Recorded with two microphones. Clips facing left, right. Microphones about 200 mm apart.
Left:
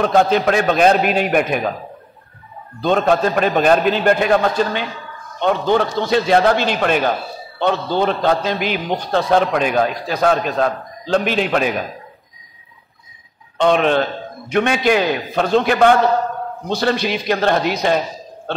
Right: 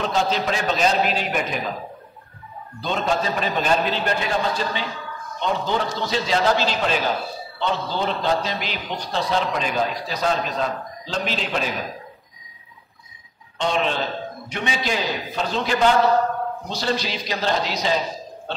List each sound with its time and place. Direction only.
0.0 s a man's voice: 55° left (ahead or behind)
2.8 s a man's voice: 55° left (ahead or behind)
13.6 s a man's voice: 60° left (ahead or behind)